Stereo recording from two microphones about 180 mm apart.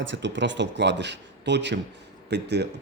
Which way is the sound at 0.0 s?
90° right.